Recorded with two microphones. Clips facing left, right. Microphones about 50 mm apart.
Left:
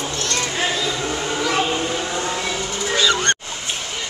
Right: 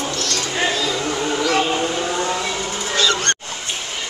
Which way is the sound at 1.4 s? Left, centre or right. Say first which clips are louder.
Right 2 dB; centre.